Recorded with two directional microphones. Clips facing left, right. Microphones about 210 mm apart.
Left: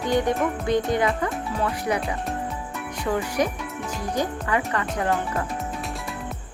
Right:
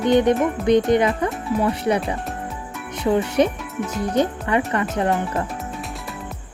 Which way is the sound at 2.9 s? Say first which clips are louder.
Right 6 dB; 25° right (ahead or behind).